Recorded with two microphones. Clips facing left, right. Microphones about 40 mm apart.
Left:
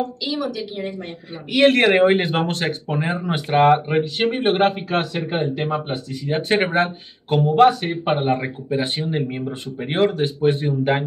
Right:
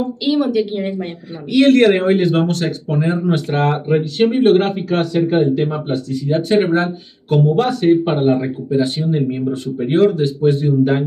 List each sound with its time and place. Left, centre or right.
0.2 s speech: right
1.5 s speech: left
5.7 s speech: left
7.4 s a man's voice: centre